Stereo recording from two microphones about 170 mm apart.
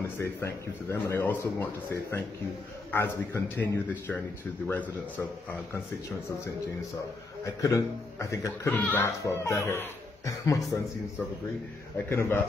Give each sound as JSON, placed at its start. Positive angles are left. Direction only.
{"t": 0.8, "sound": "speech", "side_deg": 15}
{"t": 7.6, "sound": "speech", "side_deg": 20}